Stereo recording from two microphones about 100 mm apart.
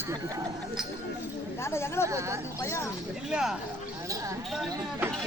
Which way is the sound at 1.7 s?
25° left (ahead or behind).